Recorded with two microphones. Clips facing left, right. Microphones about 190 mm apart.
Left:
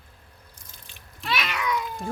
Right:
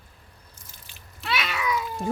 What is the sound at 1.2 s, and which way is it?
Cat, centre (ahead or behind).